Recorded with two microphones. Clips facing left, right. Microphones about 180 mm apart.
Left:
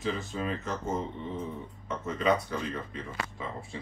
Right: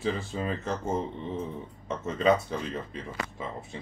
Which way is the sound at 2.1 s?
25° right (ahead or behind).